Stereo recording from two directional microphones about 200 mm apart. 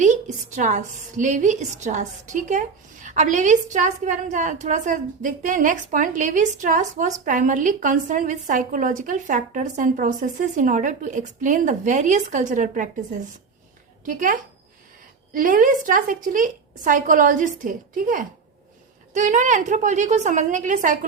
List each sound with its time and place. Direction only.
0.0 s a woman's voice: 40° right (ahead or behind)